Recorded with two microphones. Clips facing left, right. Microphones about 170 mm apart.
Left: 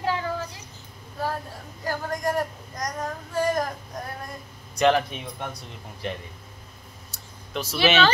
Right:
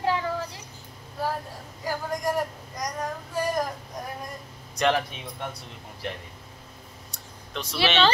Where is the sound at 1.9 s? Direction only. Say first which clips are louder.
Left 1 dB; 10° right (ahead or behind).